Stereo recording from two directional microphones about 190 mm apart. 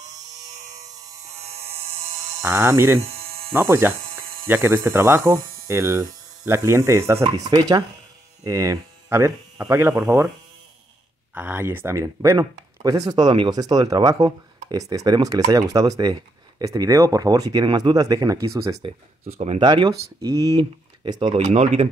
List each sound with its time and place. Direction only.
1.4 s electric shaver: 35° right (ahead or behind)
2.4 s hum: 10° right (ahead or behind)
3.2 s a sound: 30° right (ahead or behind)
3.5 s hum: 15° right (ahead or behind)
11.3 s speech: 10° right (ahead or behind)
21.4 s speech: 35° right (ahead or behind)